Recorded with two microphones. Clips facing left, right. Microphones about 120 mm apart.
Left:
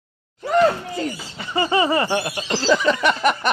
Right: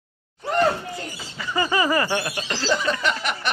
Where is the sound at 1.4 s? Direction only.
30° left (ahead or behind).